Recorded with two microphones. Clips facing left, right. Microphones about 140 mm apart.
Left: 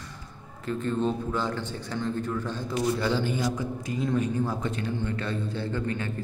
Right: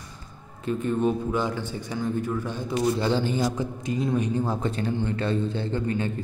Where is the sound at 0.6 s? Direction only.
15° right (ahead or behind).